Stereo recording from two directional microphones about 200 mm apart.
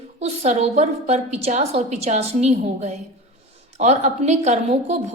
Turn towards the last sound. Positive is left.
turn(degrees=-35)  # may be behind; listen again after turning